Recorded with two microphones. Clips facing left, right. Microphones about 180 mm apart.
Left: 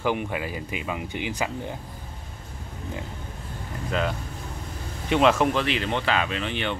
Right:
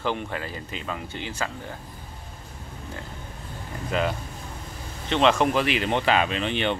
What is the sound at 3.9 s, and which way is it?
Speech, 5° right (ahead or behind).